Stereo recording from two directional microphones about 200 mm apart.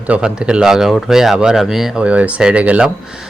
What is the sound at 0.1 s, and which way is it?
Speech, 5° right (ahead or behind).